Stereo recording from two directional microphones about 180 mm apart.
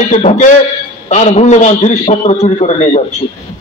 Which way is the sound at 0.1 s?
45° left (ahead or behind).